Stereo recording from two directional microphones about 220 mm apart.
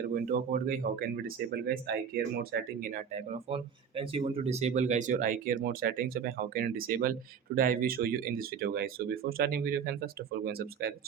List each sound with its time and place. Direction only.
0.1 s speech: 40° right (ahead or behind)